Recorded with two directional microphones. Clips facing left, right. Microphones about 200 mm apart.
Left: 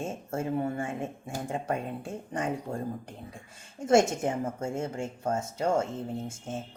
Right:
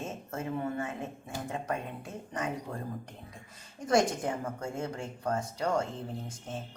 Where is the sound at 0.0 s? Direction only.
30° left (ahead or behind).